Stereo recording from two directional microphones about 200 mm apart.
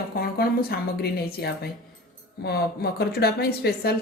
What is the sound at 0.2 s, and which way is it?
A woman's voice, 50° left (ahead or behind).